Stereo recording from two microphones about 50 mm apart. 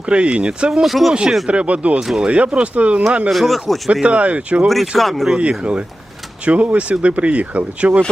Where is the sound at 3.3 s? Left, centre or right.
Centre.